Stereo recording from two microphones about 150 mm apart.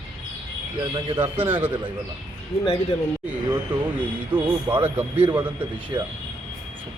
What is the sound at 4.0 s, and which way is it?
Speech, 10° right (ahead or behind).